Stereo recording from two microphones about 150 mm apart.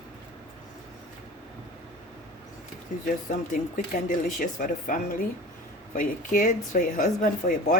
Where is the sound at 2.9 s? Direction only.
60° left (ahead or behind).